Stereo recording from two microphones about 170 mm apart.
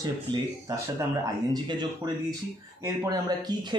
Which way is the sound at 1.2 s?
25° right (ahead or behind).